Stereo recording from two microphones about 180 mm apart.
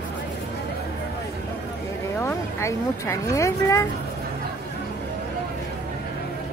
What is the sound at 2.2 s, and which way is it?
Speech, 15° left (ahead or behind).